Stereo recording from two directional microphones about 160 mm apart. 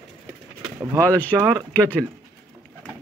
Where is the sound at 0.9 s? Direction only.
10° left (ahead or behind).